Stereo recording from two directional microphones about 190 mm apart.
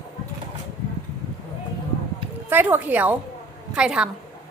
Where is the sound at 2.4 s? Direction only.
10° right (ahead or behind).